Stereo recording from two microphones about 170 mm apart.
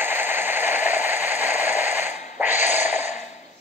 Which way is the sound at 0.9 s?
40° left (ahead or behind).